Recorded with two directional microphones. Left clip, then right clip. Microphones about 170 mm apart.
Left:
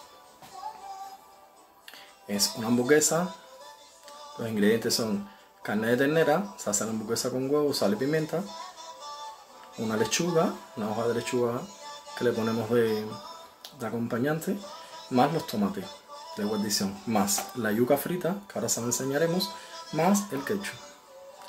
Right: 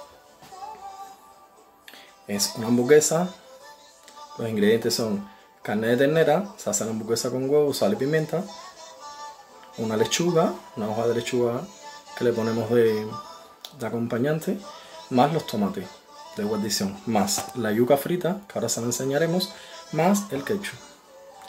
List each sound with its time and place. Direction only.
2.2 s speech: 25° right (ahead or behind)
4.4 s speech: 25° right (ahead or behind)
9.8 s speech: 25° right (ahead or behind)